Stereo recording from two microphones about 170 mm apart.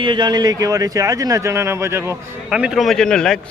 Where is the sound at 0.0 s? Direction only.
25° right (ahead or behind).